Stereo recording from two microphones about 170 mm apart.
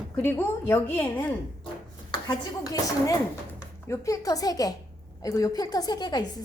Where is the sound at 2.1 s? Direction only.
25° left (ahead or behind).